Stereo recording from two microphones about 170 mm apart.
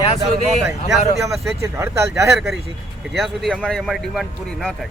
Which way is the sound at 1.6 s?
15° right (ahead or behind).